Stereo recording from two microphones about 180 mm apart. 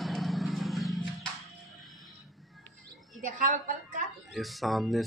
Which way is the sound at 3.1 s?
45° right (ahead or behind).